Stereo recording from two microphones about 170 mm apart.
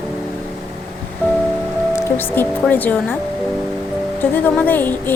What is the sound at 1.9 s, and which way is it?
A woman's voice, 10° left (ahead or behind).